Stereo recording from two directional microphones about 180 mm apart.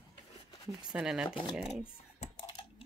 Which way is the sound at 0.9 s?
5° right (ahead or behind).